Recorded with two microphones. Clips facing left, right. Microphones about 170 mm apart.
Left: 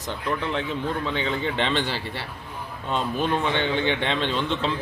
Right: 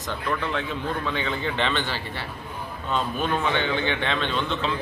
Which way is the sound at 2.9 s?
25° left (ahead or behind).